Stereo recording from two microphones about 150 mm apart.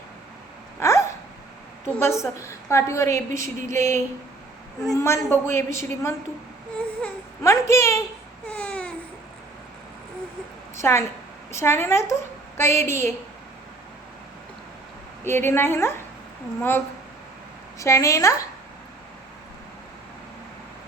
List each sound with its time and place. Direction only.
0.8 s hiccup: 20° left (ahead or behind)
2.0 s a woman's voice: 20° left (ahead or behind)
7.4 s a woman's voice: 20° left (ahead or behind)
8.4 s baby cry: 10° left (ahead or behind)
10.8 s a woman's voice: 15° left (ahead or behind)
15.2 s a woman's voice: 15° left (ahead or behind)
17.7 s a woman's voice: 20° left (ahead or behind)